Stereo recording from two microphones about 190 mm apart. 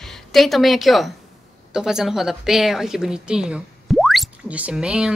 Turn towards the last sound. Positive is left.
turn(degrees=-5)  # may be behind; listen again after turning